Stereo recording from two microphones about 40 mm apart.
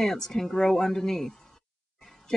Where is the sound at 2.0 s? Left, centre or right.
Centre.